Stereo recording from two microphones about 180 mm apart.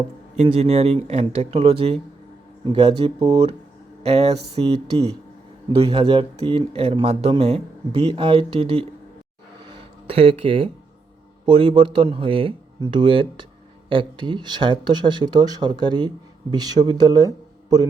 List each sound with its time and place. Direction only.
0.3 s speech: 35° right (ahead or behind)
10.1 s speech: 30° right (ahead or behind)